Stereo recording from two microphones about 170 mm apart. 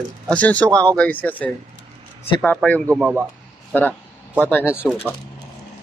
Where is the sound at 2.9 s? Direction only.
5° right (ahead or behind).